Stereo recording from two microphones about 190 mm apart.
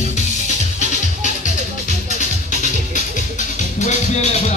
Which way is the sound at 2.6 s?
40° left (ahead or behind).